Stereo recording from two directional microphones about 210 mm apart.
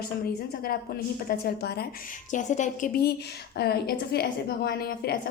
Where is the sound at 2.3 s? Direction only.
35° left (ahead or behind).